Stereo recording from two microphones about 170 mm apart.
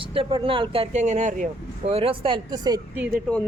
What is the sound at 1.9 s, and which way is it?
Speech, 35° right (ahead or behind).